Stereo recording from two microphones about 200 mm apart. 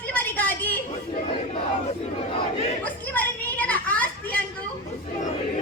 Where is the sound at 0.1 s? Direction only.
10° left (ahead or behind).